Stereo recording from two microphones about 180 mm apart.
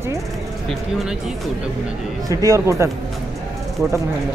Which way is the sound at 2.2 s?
20° right (ahead or behind).